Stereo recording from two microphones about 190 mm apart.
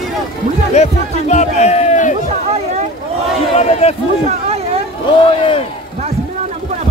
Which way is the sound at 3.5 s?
35° left (ahead or behind).